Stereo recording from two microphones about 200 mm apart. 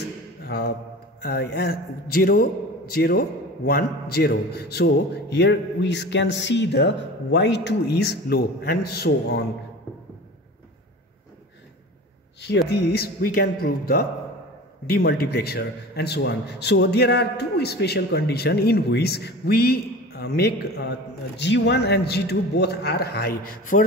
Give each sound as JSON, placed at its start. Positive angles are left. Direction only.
{"t": 0.5, "sound": "a man's voice", "side_deg": 50}
{"t": 12.4, "sound": "a man's voice", "side_deg": 55}